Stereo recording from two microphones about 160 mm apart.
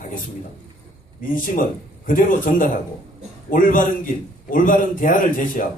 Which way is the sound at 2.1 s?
60° left (ahead or behind).